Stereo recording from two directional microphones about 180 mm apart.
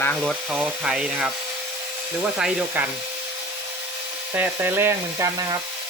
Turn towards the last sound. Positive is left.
turn(degrees=-15)  # may be behind; listen again after turning